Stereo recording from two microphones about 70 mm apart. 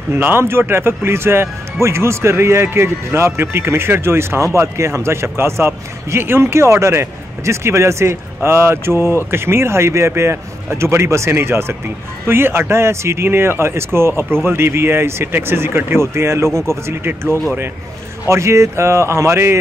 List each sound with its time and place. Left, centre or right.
0.1 s speech: right